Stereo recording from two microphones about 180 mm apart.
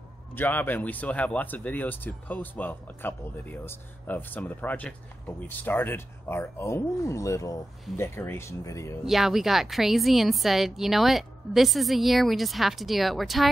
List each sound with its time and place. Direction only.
0.4 s speech: 10° left (ahead or behind)
9.0 s a woman's voice: centre (ahead or behind)